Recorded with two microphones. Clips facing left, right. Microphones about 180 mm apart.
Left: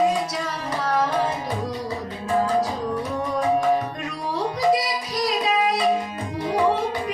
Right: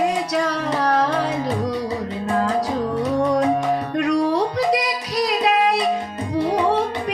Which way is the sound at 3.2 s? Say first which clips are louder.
Right 2 dB; 80° right.